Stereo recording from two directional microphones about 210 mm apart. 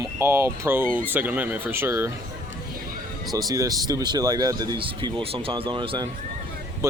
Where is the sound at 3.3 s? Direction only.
15° right (ahead or behind).